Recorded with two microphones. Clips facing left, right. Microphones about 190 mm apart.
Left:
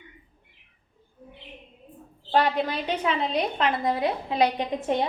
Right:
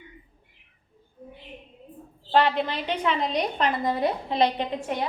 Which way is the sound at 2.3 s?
10° left (ahead or behind).